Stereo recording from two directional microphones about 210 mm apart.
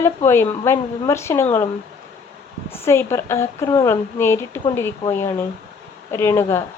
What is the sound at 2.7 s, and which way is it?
A woman's voice, 10° left (ahead or behind).